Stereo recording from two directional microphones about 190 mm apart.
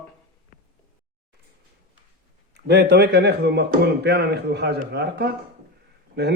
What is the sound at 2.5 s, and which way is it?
Speech, 60° right (ahead or behind).